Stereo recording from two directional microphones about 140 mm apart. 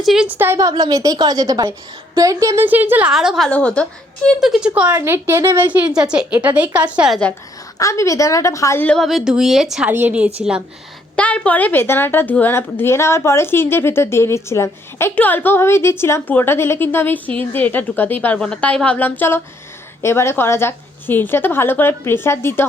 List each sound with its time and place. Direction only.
0.0 s a woman's voice: 5° right (ahead or behind); by 2.6 s 25° right (ahead or behind)
2.6 s a woman's voice: 15° right (ahead or behind); by 4.3 s 10° left (ahead or behind)
4.4 s a woman's voice: centre (ahead or behind); by 5.6 s 20° right (ahead or behind)
5.7 s a woman's voice: 5° right (ahead or behind)
7.8 s a woman's voice: 20° left (ahead or behind)
8.8 s a woman's voice: 5° left (ahead or behind)
11.2 s a woman's voice: 10° left (ahead or behind)